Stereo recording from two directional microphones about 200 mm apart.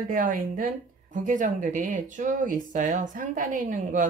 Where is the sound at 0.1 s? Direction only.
45° right (ahead or behind).